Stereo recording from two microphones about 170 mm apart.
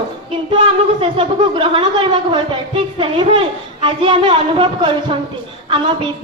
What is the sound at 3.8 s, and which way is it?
Speech, 30° right (ahead or behind).